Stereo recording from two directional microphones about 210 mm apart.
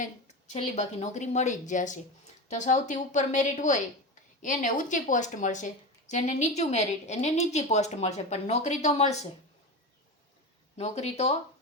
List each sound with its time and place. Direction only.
0.0 s a woman's voice: 35° left (ahead or behind)
10.8 s a woman's voice: 30° left (ahead or behind)